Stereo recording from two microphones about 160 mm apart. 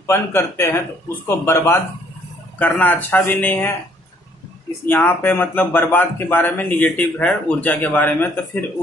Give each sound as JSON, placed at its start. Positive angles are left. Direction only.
{"t": 0.0, "sound": "a man's voice", "side_deg": 15}
{"t": 4.8, "sound": "a man's voice", "side_deg": 15}